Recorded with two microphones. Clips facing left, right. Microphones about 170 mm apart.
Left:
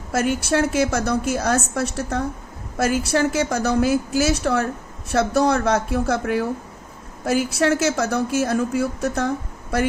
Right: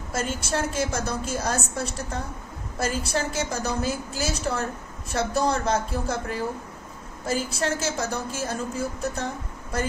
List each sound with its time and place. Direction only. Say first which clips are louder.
0.1 s a woman's voice: left 7 dB; 65° left (ahead or behind)